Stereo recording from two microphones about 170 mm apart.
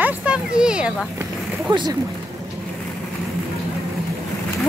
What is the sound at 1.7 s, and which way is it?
Speech, 25° right (ahead or behind).